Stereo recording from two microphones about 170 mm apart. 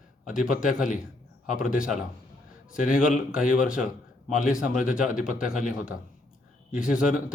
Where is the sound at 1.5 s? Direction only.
5° right (ahead or behind).